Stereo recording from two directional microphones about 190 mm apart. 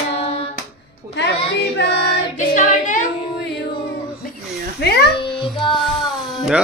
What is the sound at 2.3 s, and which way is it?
Child singing, 40° left (ahead or behind).